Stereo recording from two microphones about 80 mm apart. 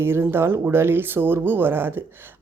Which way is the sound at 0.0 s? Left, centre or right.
Right.